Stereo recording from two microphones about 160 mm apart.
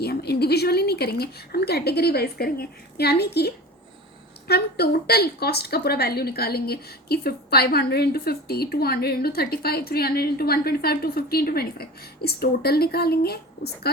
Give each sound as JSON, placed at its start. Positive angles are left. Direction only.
{"t": 0.0, "sound": "a woman's voice", "side_deg": 85}